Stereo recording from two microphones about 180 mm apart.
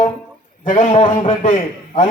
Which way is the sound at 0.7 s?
45° left (ahead or behind).